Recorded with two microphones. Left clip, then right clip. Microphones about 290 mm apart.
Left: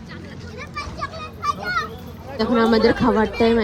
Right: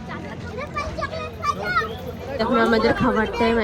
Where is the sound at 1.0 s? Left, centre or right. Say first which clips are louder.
Right 1 dB; centre.